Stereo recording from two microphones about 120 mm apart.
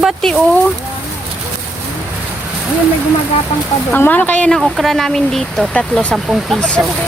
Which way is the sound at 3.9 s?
15° left (ahead or behind).